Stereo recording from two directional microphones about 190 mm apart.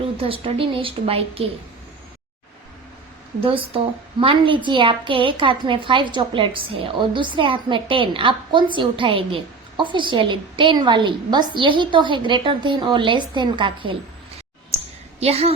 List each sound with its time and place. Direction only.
0.2 s a woman's voice: 30° right (ahead or behind)
3.4 s a woman's voice: 30° right (ahead or behind)
15.2 s a woman's voice: 35° right (ahead or behind)